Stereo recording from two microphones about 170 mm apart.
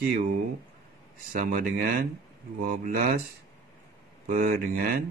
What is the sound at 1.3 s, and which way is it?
Speech, 60° right (ahead or behind).